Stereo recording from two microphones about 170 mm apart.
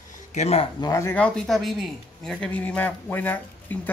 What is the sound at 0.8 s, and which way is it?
Speech, 15° left (ahead or behind).